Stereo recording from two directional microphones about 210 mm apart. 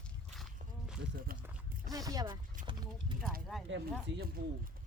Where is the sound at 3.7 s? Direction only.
55° right (ahead or behind).